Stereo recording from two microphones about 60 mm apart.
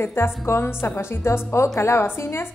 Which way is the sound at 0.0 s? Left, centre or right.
Left.